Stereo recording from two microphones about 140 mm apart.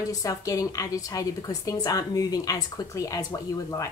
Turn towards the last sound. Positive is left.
turn(degrees=25)  # may be behind; listen again after turning